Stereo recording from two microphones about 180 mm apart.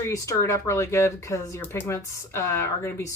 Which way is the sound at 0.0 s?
15° left (ahead or behind).